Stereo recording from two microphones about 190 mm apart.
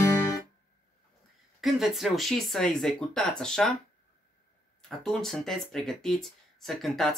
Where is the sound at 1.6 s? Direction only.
Centre (ahead or behind).